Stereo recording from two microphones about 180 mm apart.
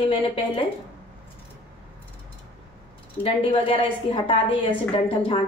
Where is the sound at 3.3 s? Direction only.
30° left (ahead or behind).